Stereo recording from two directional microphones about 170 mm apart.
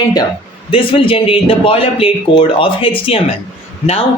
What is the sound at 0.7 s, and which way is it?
Speech, 30° left (ahead or behind).